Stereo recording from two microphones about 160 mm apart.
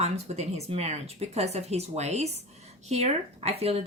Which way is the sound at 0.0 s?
40° right (ahead or behind).